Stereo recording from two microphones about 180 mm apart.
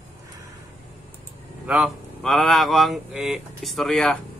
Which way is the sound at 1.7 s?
5° right (ahead or behind).